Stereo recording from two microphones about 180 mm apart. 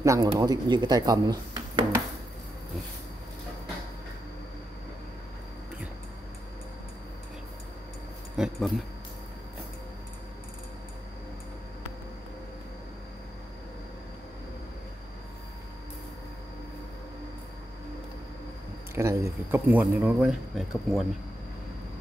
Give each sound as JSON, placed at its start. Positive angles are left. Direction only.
{"t": 0.0, "sound": "speech", "side_deg": -15}
{"t": 8.4, "sound": "speech", "side_deg": 0}
{"t": 18.9, "sound": "speech", "side_deg": -15}